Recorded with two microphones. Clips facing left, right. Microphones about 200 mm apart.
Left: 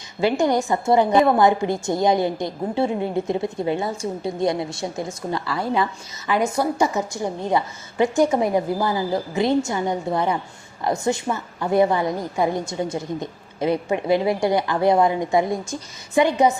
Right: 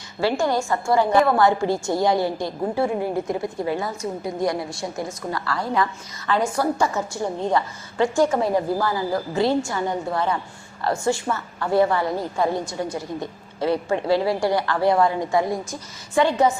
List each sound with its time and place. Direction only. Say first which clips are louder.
0.2 s a woman's voice: left 2 dB; 20° left (ahead or behind)